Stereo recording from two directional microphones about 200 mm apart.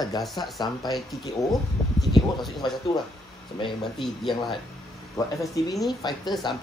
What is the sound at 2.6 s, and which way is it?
Speech, 20° left (ahead or behind).